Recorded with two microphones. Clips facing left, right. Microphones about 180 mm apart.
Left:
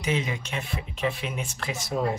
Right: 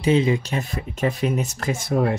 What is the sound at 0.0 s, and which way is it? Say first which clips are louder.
Speech: right 10 dB; 30° right (ahead or behind).